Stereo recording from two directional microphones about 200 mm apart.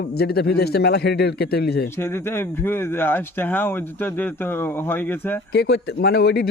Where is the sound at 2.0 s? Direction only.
10° left (ahead or behind).